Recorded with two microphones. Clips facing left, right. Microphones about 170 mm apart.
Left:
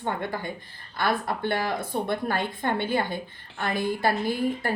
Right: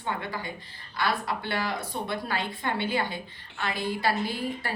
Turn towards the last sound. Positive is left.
turn(degrees=50)  # may be behind; listen again after turning